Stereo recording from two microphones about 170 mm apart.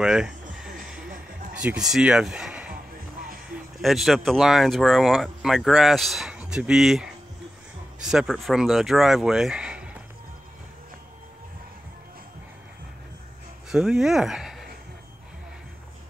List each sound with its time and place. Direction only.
0.0 s a sound: 5° right (ahead or behind)
3.8 s speech: centre (ahead or behind)
13.7 s speech: 5° right (ahead or behind)